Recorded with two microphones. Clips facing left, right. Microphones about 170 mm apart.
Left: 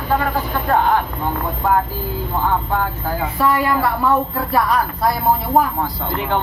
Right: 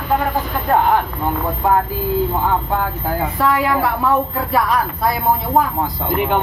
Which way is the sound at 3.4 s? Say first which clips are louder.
Even; centre (ahead or behind).